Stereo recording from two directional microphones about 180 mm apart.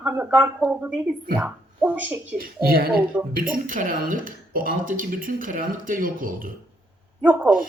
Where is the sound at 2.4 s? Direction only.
55° right (ahead or behind).